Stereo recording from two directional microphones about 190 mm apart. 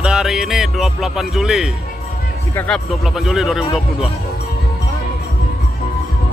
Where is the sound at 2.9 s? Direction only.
Centre (ahead or behind).